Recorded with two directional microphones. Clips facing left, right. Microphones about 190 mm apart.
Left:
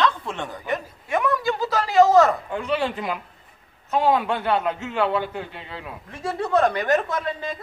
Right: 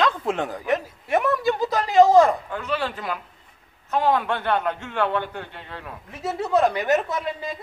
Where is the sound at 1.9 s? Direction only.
15° right (ahead or behind).